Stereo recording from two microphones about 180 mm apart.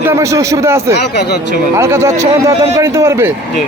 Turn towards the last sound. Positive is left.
turn(degrees=-15)  # may be behind; listen again after turning